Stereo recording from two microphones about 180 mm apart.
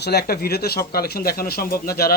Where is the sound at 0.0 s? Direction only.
65° left (ahead or behind).